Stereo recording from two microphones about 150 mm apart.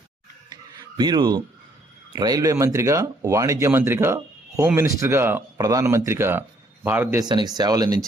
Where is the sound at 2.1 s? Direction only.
25° right (ahead or behind).